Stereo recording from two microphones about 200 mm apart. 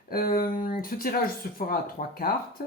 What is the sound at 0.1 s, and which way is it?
Speech, 50° left (ahead or behind).